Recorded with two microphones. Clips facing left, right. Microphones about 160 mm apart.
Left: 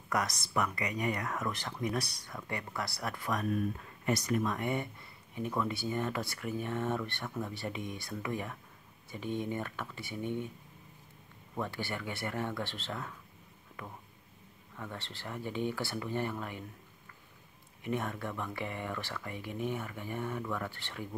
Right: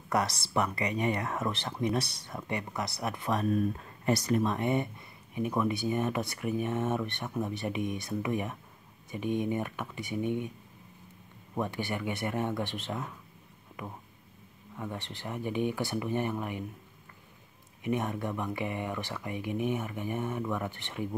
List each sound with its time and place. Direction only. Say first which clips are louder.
0.1 s speech: right 4 dB; 30° right (ahead or behind); by 10.5 s 15° right (ahead or behind)
11.5 s speech: right 4 dB; 15° right (ahead or behind)
17.8 s speech: right 4 dB; 20° right (ahead or behind)